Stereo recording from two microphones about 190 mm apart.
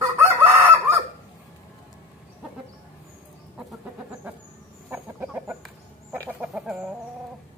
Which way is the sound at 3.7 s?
5° right (ahead or behind).